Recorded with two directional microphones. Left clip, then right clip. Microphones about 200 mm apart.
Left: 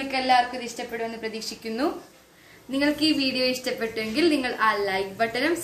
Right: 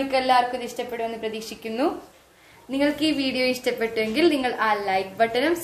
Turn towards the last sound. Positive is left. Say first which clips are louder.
# right 3 dB
turn(degrees=-30)  # may be behind; listen again after turning